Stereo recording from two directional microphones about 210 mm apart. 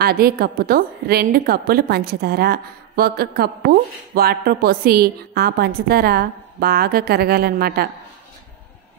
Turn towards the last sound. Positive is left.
turn(degrees=-45)  # may be behind; listen again after turning